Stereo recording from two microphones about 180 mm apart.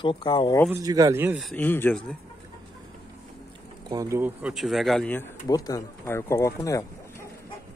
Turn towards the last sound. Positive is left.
turn(degrees=20)  # may be behind; listen again after turning